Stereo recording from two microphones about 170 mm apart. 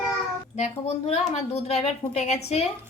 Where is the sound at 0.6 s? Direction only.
40° left (ahead or behind).